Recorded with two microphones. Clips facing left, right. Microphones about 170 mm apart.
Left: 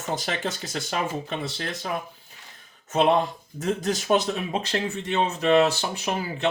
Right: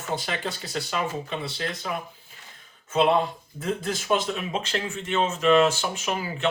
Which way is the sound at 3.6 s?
40° left (ahead or behind).